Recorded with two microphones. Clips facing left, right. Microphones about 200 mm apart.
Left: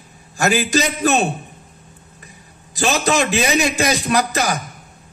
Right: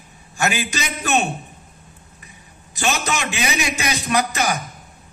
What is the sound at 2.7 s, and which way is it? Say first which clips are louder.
A man's voice: left 5 dB; 35° left (ahead or behind).